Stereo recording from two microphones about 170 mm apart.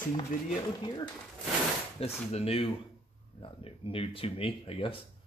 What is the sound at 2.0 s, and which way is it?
Speech, 35° left (ahead or behind).